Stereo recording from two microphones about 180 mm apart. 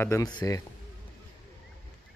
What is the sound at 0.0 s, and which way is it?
Speech, 20° left (ahead or behind).